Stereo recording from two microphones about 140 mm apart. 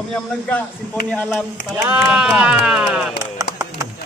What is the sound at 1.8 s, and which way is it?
Speech, 15° right (ahead or behind).